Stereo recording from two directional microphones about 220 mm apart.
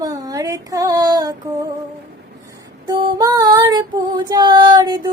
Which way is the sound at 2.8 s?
20° right (ahead or behind).